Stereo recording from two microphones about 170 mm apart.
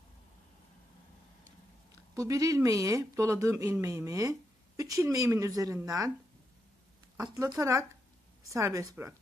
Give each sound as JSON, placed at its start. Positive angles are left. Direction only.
{"t": 2.1, "sound": "speech", "side_deg": -20}
{"t": 7.2, "sound": "speech", "side_deg": -25}